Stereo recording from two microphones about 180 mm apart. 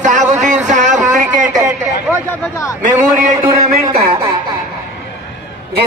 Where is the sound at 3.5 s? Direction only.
20° right (ahead or behind).